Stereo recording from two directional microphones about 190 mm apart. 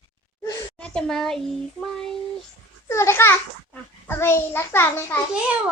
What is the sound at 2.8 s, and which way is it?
A child's voice, 15° left (ahead or behind).